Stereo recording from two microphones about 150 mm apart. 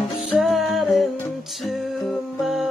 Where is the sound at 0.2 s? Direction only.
Centre (ahead or behind).